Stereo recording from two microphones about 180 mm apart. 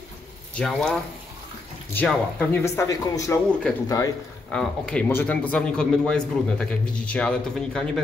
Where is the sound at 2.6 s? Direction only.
15° left (ahead or behind).